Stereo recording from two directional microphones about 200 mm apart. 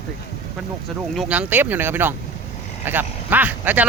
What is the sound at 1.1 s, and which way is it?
Speech, 5° right (ahead or behind).